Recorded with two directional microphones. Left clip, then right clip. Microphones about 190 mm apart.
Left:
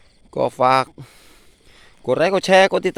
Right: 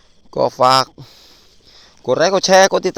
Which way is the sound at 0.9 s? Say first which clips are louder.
Right 3 dB; 15° left (ahead or behind).